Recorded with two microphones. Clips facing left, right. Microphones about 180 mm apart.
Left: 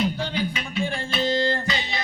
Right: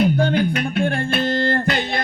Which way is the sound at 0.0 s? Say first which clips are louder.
Right 8 dB; 55° right (ahead or behind).